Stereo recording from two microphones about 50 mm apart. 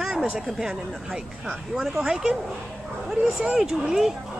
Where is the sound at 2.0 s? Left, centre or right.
Centre.